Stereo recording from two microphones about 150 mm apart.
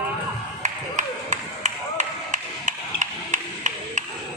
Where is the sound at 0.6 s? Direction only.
55° right (ahead or behind).